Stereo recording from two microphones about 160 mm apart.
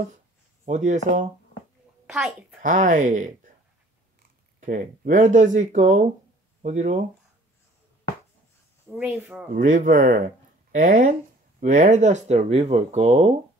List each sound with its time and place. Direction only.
0.7 s speech: 50° right (ahead or behind)
2.6 s speech: 55° right (ahead or behind)
4.6 s speech: 60° right (ahead or behind)
8.9 s speech: 10° right (ahead or behind)
9.5 s speech: 55° right (ahead or behind)